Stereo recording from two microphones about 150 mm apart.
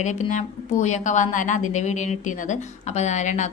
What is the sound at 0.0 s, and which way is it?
A woman's voice, 55° left (ahead or behind).